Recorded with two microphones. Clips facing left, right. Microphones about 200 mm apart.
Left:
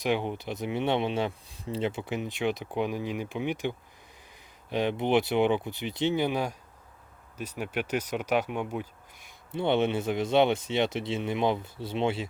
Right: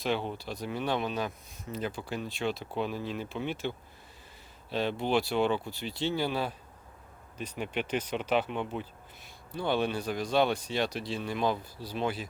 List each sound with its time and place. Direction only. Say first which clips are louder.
0.0 s speech: left 3 dB; 15° left (ahead or behind)
9.5 s speech: left 4 dB; 25° left (ahead or behind)